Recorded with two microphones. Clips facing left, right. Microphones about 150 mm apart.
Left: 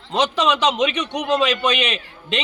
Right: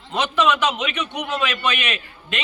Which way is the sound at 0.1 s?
30° left (ahead or behind).